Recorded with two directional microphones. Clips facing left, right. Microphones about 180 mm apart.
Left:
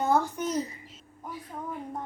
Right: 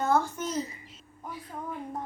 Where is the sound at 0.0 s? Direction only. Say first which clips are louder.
Left 1 dB; 15° left (ahead or behind).